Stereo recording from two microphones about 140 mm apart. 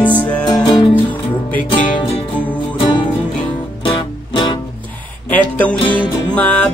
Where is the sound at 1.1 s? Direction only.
10° left (ahead or behind).